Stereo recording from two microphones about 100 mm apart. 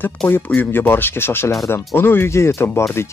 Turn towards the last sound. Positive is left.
turn(degrees=25)  # may be behind; listen again after turning